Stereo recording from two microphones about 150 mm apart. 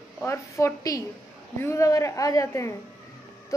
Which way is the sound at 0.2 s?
15° left (ahead or behind).